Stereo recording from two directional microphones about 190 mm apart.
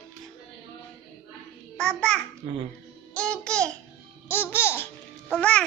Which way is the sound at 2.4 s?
30° right (ahead or behind).